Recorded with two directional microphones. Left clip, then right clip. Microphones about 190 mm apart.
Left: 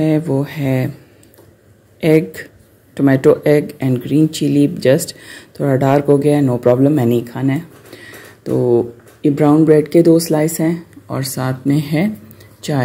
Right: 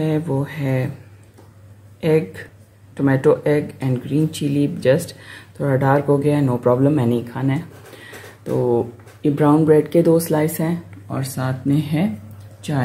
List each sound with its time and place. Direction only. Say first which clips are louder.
0.0 s speech: left 6 dB; 25° left (ahead or behind)
2.0 s speech: left 5 dB; 25° left (ahead or behind)